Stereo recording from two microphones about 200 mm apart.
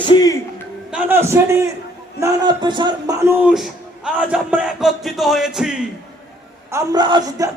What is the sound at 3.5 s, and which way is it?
Speech, centre (ahead or behind).